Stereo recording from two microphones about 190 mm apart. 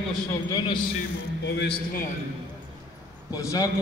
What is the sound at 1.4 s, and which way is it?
Speech, 65° left (ahead or behind).